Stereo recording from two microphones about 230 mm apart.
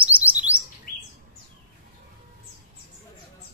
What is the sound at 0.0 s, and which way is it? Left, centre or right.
Chirp, centre.